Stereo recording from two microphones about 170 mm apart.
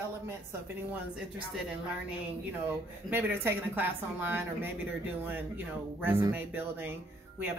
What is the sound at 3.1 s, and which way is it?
Speech, 10° right (ahead or behind).